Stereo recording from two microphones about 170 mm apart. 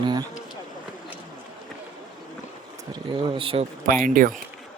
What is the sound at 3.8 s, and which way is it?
Speech, 50° right (ahead or behind).